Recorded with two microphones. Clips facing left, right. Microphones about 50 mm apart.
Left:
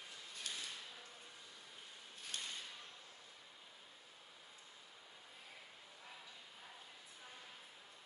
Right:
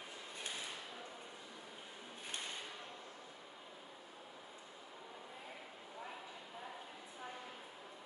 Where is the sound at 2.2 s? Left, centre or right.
Right.